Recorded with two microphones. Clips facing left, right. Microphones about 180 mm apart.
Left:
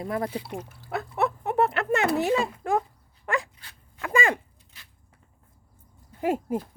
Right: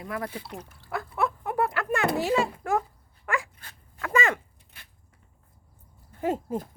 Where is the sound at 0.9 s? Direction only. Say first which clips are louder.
Left 2 dB; 25° left (ahead or behind).